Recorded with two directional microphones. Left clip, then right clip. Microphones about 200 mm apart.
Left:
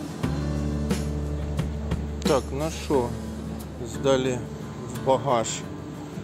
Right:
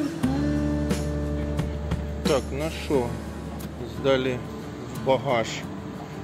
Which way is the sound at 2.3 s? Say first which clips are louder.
Even; 20° left (ahead or behind).